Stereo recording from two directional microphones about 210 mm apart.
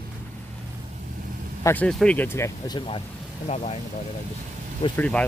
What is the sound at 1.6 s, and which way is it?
Speech, 5° left (ahead or behind).